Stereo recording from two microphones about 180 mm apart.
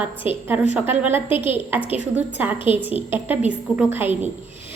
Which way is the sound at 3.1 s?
10° right (ahead or behind).